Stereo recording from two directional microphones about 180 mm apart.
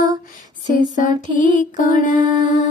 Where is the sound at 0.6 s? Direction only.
45° left (ahead or behind).